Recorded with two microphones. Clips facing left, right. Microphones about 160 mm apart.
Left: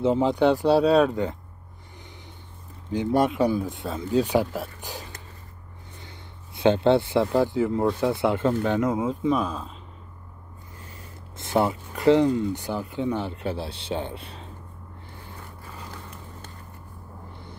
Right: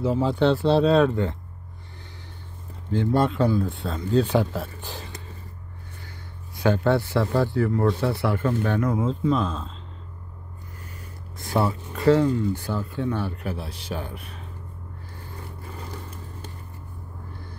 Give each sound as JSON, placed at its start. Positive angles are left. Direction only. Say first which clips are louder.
{"t": 0.0, "sound": "speech", "louder": "left 1 dB", "side_deg": 20}
{"t": 2.9, "sound": "speech", "louder": "even", "side_deg": 15}
{"t": 5.9, "sound": "a man's voice", "louder": "even", "side_deg": 25}
{"t": 11.3, "sound": "a man's voice", "louder": "left 1 dB", "side_deg": 20}